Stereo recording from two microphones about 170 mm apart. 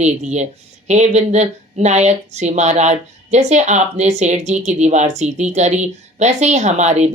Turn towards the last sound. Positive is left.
turn(degrees=-45)  # may be behind; listen again after turning